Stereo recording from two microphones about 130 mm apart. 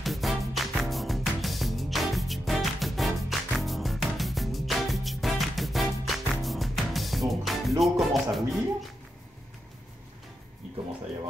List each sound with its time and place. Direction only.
0.0 s music: centre (ahead or behind)